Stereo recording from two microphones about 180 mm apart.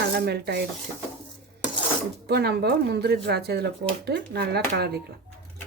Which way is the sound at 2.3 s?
65° right (ahead or behind).